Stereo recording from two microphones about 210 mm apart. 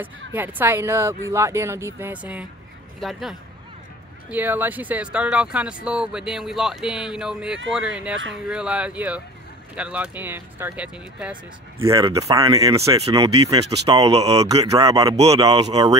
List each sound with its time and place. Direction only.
0.3 s speech: 10° right (ahead or behind)
13.4 s speech: 30° right (ahead or behind)
14.5 s speech: 15° right (ahead or behind)